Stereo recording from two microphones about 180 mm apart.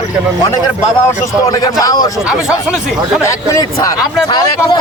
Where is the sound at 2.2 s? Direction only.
5° right (ahead or behind).